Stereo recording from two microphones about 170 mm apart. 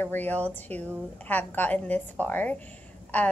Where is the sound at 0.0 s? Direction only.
10° left (ahead or behind).